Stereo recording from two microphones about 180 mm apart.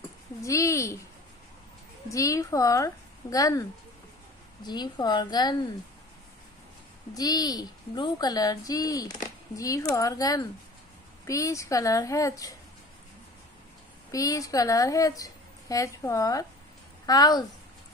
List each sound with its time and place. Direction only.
0.4 s speech: 15° left (ahead or behind)
2.0 s a woman's voice: 15° left (ahead or behind)
4.6 s a woman's voice: 25° left (ahead or behind)
7.2 s a woman's voice: 20° left (ahead or behind)
14.1 s a woman's voice: 20° left (ahead or behind)